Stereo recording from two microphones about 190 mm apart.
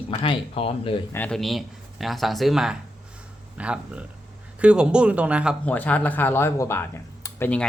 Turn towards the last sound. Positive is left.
turn(degrees=10)  # may be behind; listen again after turning